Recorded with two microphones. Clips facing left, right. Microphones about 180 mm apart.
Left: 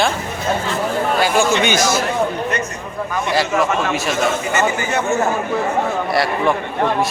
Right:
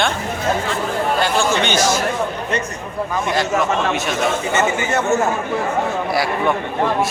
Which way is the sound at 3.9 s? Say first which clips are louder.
Even; centre (ahead or behind).